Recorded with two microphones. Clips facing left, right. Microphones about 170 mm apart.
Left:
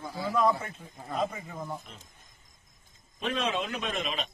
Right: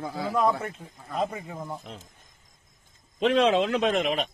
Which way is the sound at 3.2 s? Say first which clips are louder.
Right 10 dB; 85° right.